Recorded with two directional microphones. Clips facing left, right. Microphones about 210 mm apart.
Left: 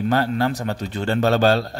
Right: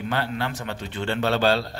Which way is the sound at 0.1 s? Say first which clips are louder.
Left 6 dB; 40° left (ahead or behind).